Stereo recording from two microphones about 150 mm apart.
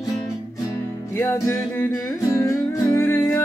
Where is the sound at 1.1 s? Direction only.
15° left (ahead or behind).